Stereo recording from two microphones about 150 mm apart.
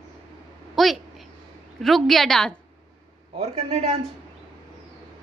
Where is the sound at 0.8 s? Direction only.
Centre (ahead or behind).